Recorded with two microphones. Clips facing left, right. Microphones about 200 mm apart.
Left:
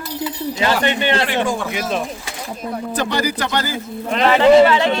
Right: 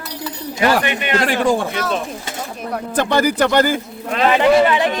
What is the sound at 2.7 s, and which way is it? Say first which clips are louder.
A man's voice: right 4 dB; 55° right (ahead or behind).